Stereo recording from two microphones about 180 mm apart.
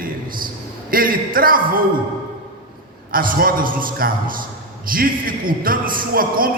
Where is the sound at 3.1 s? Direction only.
50° right (ahead or behind).